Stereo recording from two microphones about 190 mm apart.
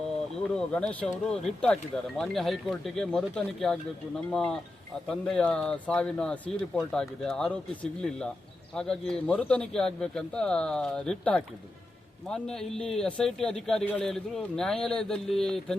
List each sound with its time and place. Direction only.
0.5 s speech: 5° left (ahead or behind)
8.7 s speech: 5° left (ahead or behind)